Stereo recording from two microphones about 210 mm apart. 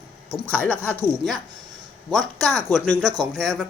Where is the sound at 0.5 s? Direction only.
10° left (ahead or behind).